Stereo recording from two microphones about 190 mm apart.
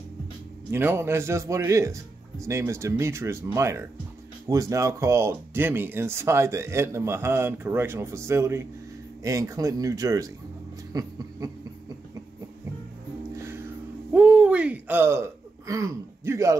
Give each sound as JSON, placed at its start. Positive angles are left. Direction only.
{"t": 0.7, "sound": "speech", "side_deg": -10}
{"t": 10.9, "sound": "a sound", "side_deg": -20}
{"t": 14.1, "sound": "hoot", "side_deg": -5}